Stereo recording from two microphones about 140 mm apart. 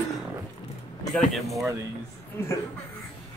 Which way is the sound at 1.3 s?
Centre (ahead or behind).